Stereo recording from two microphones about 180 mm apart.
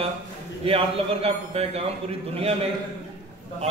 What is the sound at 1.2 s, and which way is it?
Speech, 35° right (ahead or behind).